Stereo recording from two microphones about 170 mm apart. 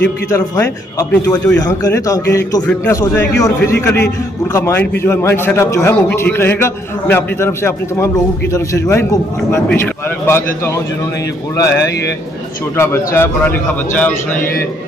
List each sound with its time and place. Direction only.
0.3 s a man's voice: 15° left (ahead or behind)